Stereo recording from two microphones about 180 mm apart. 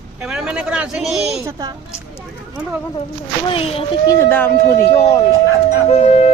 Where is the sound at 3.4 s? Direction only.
30° left (ahead or behind).